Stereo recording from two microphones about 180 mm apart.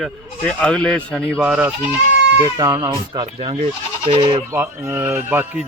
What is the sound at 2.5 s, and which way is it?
Speech, 20° right (ahead or behind).